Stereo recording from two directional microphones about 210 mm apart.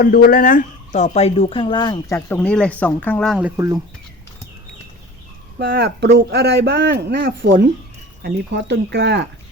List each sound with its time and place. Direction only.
0.0 s speech: 45° left (ahead or behind); by 3.8 s 10° right (ahead or behind)
5.5 s speech: 50° right (ahead or behind)